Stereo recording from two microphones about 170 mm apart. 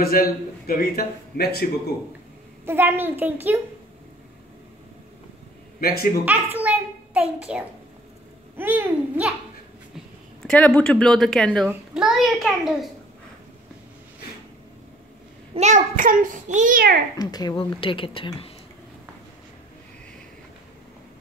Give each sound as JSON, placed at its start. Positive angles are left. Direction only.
{"t": 0.0, "sound": "a man's voice", "side_deg": 60}
{"t": 2.6, "sound": "a woman's voice", "side_deg": -15}
{"t": 5.8, "sound": "a man's voice", "side_deg": 60}
{"t": 6.2, "sound": "a woman's voice", "side_deg": -10}
{"t": 10.4, "sound": "a woman's voice", "side_deg": 5}
{"t": 15.5, "sound": "a child's voice", "side_deg": -45}
{"t": 17.2, "sound": "speech", "side_deg": 25}